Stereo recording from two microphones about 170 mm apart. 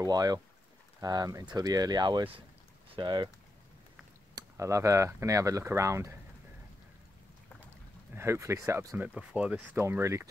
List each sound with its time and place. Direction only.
0.0 s speech: 20° right (ahead or behind)
4.4 s speech: 15° right (ahead or behind)
8.1 s speech: 15° right (ahead or behind)